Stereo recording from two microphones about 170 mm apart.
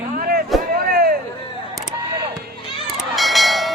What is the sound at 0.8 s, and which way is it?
Vehicle, 60° right (ahead or behind).